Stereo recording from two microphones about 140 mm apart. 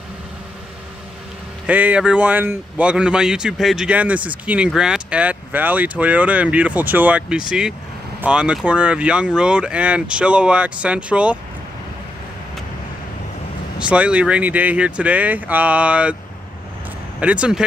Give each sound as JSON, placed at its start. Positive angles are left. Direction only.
{"t": 1.7, "sound": "speech", "side_deg": -10}
{"t": 13.7, "sound": "speech", "side_deg": -10}
{"t": 17.2, "sound": "speech", "side_deg": -10}